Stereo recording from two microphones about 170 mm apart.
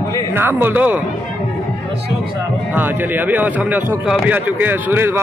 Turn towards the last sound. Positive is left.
turn(degrees=-15)  # may be behind; listen again after turning